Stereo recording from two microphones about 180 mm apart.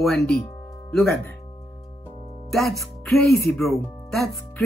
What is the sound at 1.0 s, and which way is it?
Speech, 5° left (ahead or behind).